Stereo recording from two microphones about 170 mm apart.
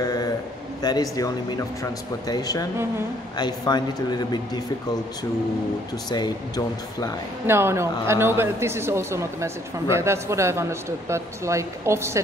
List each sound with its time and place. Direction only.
0.0 s a sound: 20° left (ahead or behind)
1.1 s speech: 20° left (ahead or behind)
6.0 s speech: 25° left (ahead or behind)
7.4 s a man's voice: 15° right (ahead or behind)